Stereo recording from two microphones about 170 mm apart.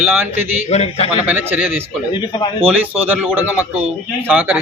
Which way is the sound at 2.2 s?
30° left (ahead or behind).